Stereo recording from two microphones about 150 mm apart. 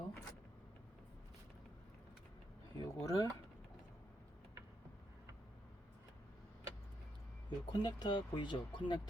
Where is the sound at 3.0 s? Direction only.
20° left (ahead or behind).